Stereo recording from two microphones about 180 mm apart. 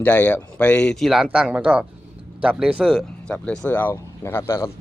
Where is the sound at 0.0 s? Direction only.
10° left (ahead or behind).